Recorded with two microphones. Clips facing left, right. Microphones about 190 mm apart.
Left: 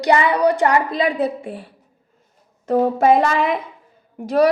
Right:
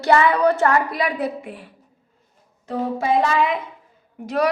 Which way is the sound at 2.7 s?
55° left (ahead or behind).